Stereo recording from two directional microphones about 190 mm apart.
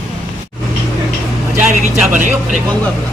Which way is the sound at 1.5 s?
5° right (ahead or behind).